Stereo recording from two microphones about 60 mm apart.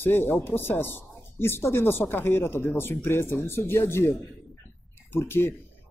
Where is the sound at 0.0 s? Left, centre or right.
Left.